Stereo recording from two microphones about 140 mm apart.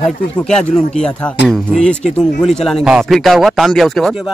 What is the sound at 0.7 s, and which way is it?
Speech, 60° left (ahead or behind).